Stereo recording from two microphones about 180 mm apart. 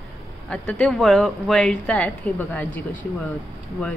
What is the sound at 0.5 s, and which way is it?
Speech, 5° left (ahead or behind).